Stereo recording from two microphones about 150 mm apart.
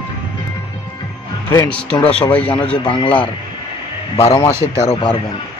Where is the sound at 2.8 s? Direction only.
35° left (ahead or behind).